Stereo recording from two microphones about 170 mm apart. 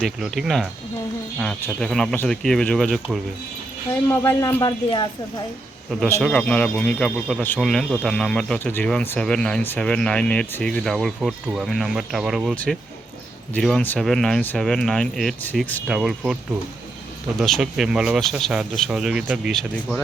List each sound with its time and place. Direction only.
0.0 s speech: centre (ahead or behind)
4.1 s speech: 15° left (ahead or behind)
5.9 s speech: 5° left (ahead or behind)
15.9 s speech: centre (ahead or behind)